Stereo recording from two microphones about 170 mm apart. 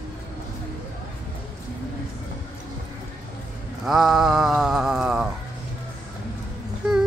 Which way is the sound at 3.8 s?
Centre (ahead or behind).